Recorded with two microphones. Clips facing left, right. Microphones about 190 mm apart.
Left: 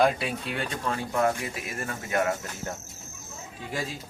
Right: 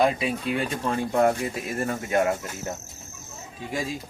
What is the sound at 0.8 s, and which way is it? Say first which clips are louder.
Speech: right 3 dB; 30° right (ahead or behind).